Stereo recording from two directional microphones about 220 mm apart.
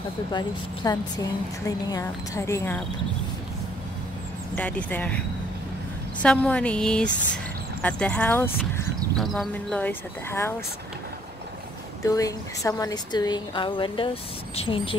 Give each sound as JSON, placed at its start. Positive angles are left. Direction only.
{"t": 0.3, "sound": "a woman's voice", "side_deg": 20}
{"t": 4.6, "sound": "speech", "side_deg": 5}
{"t": 6.2, "sound": "speech", "side_deg": 5}
{"t": 12.0, "sound": "a woman's voice", "side_deg": 15}